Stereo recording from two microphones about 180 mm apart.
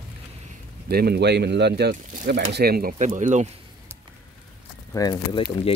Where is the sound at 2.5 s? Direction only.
60° right (ahead or behind).